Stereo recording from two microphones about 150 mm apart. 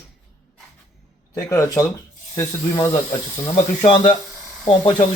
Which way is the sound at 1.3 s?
20° left (ahead or behind).